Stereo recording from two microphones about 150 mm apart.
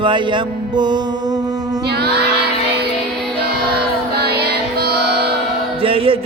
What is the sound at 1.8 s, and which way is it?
Child singing, 90° right.